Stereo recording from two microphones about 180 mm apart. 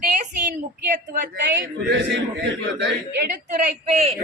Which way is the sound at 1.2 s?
50° right (ahead or behind).